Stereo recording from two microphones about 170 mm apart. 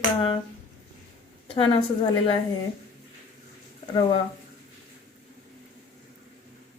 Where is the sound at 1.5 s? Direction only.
30° left (ahead or behind).